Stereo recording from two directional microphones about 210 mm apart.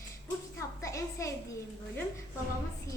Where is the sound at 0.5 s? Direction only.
15° left (ahead or behind).